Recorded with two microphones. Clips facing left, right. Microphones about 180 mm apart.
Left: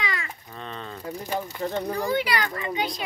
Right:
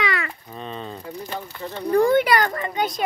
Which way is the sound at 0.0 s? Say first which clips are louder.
Right 7 dB; 65° right (ahead or behind).